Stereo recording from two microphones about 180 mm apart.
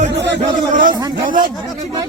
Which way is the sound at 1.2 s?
50° right (ahead or behind).